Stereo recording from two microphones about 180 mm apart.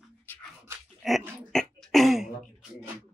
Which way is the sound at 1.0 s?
Centre (ahead or behind).